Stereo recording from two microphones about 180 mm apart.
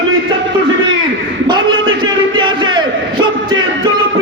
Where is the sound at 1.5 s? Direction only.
25° right (ahead or behind).